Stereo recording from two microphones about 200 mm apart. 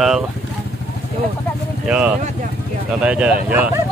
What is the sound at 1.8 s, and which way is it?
Speech, 5° right (ahead or behind).